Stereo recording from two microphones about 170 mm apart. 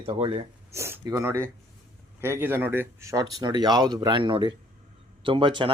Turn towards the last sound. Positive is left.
turn(degrees=-30)  # may be behind; listen again after turning